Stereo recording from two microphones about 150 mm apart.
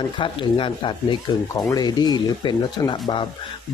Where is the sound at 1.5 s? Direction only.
25° left (ahead or behind).